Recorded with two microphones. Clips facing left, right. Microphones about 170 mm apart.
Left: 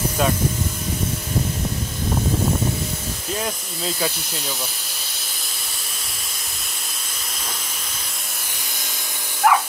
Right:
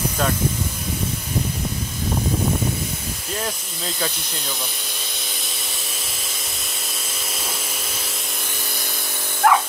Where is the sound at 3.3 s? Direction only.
5° left (ahead or behind).